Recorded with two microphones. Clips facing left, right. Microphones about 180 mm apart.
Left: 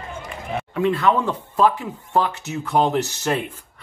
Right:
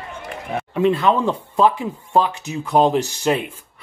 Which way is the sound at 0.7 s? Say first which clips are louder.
Right 2 dB; 20° right (ahead or behind).